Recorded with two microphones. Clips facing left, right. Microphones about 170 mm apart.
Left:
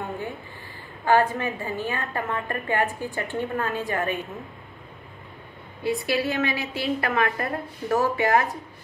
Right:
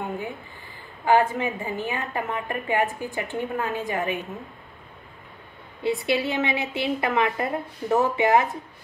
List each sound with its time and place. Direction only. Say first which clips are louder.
1.0 s a woman's voice: right 1 dB; 20° right (ahead or behind)
5.8 s a woman's voice: right 1 dB; 25° right (ahead or behind)